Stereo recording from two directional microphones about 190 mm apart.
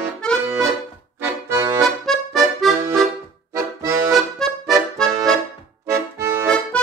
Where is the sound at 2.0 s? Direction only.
Centre (ahead or behind).